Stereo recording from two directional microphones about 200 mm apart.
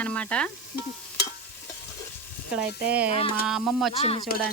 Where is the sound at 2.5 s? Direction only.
5° right (ahead or behind).